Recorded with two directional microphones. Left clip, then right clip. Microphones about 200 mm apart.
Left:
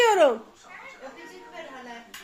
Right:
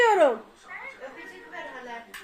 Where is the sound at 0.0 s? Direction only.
5° left (ahead or behind).